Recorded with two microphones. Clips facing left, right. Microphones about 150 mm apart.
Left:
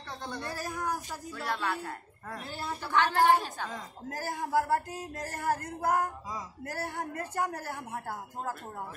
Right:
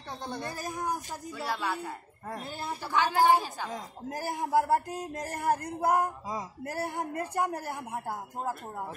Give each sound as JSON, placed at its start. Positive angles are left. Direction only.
{"t": 0.2, "sound": "speech", "side_deg": -20}
{"t": 2.2, "sound": "a woman's voice", "side_deg": -20}
{"t": 2.9, "sound": "a woman's voice", "side_deg": -5}
{"t": 3.7, "sound": "speech", "side_deg": -15}